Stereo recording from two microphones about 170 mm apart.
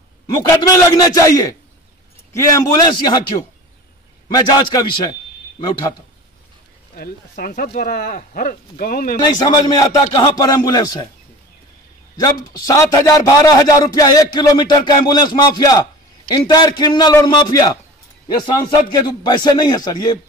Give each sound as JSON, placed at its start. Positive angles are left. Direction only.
{"t": 0.3, "sound": "a man's voice", "side_deg": 20}
{"t": 4.4, "sound": "a man's voice", "side_deg": 25}
{"t": 7.0, "sound": "speech", "side_deg": 60}
{"t": 9.2, "sound": "a man's voice", "side_deg": 25}
{"t": 12.2, "sound": "a man's voice", "side_deg": 25}